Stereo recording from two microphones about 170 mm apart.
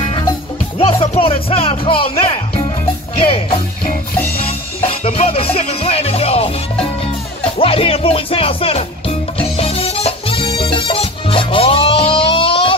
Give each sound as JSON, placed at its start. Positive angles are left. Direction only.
{"t": 0.7, "sound": "speech", "side_deg": 35}
{"t": 3.3, "sound": "music", "side_deg": 30}